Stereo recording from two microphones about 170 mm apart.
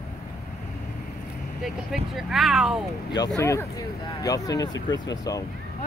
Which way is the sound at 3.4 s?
15° left (ahead or behind).